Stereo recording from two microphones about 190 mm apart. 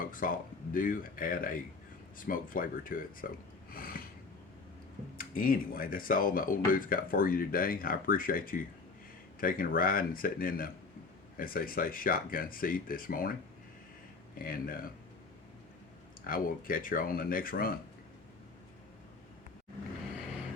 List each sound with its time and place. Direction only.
0.0 s speech: 45° left (ahead or behind)
3.7 s a sound: 50° left (ahead or behind)
5.1 s speech: 50° left (ahead or behind)
14.3 s speech: 50° left (ahead or behind)
16.2 s speech: 50° left (ahead or behind)